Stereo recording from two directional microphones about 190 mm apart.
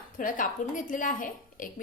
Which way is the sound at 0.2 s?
45° left (ahead or behind).